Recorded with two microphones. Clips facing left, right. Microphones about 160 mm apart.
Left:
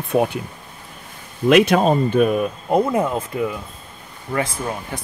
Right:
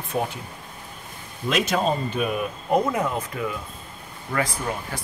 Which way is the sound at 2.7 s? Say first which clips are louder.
Left 4 dB; 30° left (ahead or behind).